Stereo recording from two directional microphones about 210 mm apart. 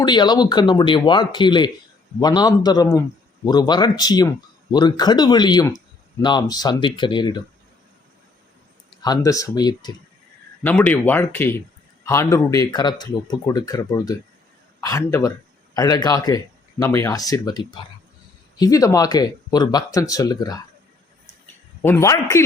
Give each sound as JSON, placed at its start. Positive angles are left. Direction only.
{"t": 0.0, "sound": "speech", "side_deg": 20}
{"t": 8.9, "sound": "speech", "side_deg": 20}
{"t": 10.6, "sound": "speech", "side_deg": 10}
{"t": 21.8, "sound": "speech", "side_deg": 15}